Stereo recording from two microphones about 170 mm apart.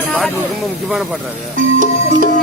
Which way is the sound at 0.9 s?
Centre (ahead or behind).